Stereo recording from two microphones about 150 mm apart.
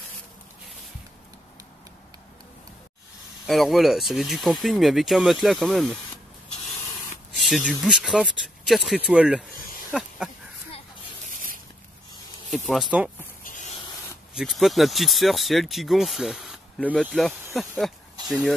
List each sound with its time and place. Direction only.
3.4 s speech: centre (ahead or behind)
7.3 s speech: centre (ahead or behind)
12.9 s speech: 10° right (ahead or behind)
13.4 s spray: 60° left (ahead or behind)
14.3 s speech: centre (ahead or behind)